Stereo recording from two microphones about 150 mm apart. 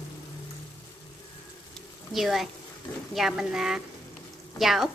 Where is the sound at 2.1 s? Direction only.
Centre (ahead or behind).